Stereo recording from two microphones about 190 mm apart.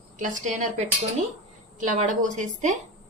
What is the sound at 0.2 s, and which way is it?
A woman's voice, 40° right (ahead or behind).